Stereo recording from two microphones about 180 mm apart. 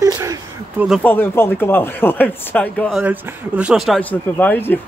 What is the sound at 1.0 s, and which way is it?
Speech, 10° left (ahead or behind).